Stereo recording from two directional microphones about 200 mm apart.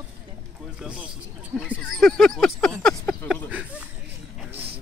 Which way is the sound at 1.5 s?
Centre (ahead or behind).